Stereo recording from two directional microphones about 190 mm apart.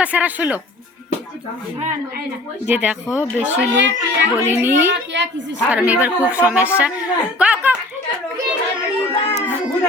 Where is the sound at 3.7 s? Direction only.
65° right (ahead or behind).